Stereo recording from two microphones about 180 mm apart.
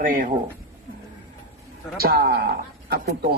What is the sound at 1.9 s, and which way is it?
Speech, 55° right (ahead or behind).